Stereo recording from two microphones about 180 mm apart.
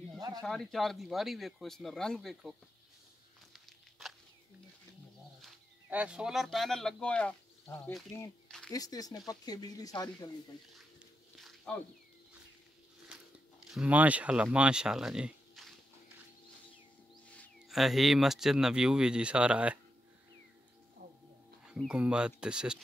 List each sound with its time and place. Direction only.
0.4 s speech: centre (ahead or behind)
5.4 s speech: 5° right (ahead or behind)
8.5 s a sound: 5° left (ahead or behind)
8.7 s speech: 20° left (ahead or behind)
11.3 s a sound: centre (ahead or behind)
13.7 s speech: 5° right (ahead or behind)
17.3 s speech: 5° left (ahead or behind)
21.6 s speech: 5° right (ahead or behind)